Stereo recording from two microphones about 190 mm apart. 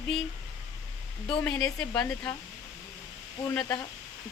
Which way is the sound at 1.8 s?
5° left (ahead or behind).